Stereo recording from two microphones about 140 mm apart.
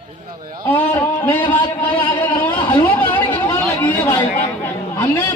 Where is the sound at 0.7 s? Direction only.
15° left (ahead or behind).